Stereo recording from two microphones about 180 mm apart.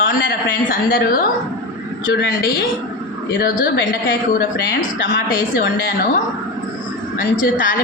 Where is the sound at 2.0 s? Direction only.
75° left (ahead or behind).